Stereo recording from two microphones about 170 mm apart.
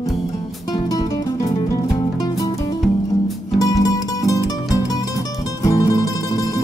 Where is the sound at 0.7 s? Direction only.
20° left (ahead or behind).